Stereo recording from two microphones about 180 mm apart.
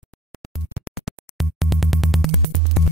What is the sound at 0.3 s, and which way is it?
Music, centre (ahead or behind).